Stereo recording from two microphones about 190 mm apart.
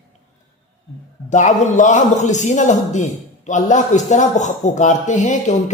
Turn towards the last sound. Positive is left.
turn(degrees=40)  # may be behind; listen again after turning